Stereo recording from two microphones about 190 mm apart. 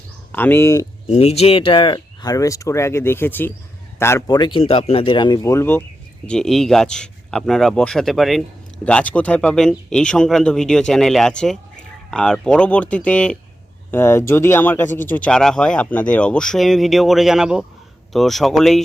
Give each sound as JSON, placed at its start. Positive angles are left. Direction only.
{"t": 0.3, "sound": "speech", "side_deg": 10}
{"t": 1.0, "sound": "speech", "side_deg": 35}